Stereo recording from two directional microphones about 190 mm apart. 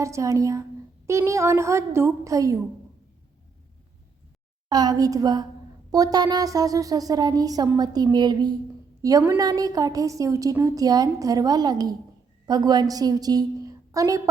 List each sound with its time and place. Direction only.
0.0 s a woman's voice: 15° right (ahead or behind)
4.7 s a woman's voice: 20° right (ahead or behind)